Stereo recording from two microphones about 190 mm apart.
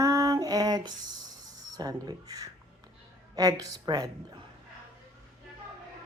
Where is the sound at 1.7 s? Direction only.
20° right (ahead or behind).